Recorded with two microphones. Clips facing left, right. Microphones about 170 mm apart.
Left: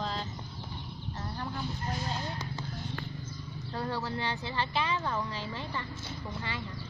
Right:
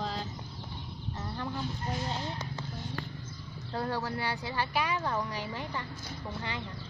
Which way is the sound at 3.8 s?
10° right (ahead or behind).